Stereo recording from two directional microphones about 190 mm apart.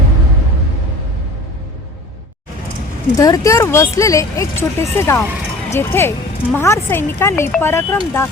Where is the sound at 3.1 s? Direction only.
20° left (ahead or behind).